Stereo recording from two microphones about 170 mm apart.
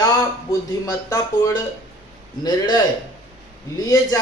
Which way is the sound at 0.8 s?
20° left (ahead or behind).